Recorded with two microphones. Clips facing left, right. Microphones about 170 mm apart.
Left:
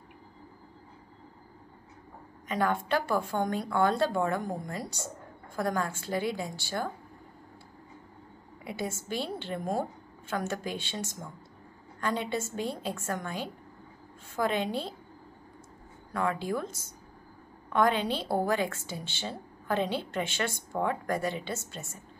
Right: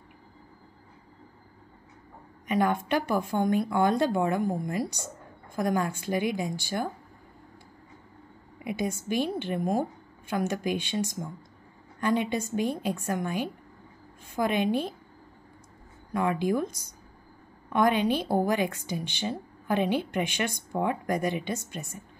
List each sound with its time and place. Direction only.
2.4 s a woman's voice: 15° right (ahead or behind)
8.6 s a woman's voice: 15° right (ahead or behind)
16.1 s a woman's voice: 15° right (ahead or behind)